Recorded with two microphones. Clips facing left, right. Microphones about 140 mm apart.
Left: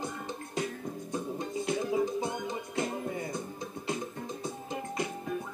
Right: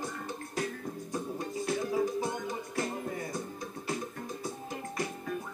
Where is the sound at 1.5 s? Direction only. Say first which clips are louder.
Left 1 dB; 20° left (ahead or behind).